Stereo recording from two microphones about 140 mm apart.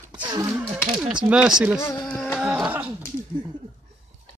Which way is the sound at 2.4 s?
5° right (ahead or behind).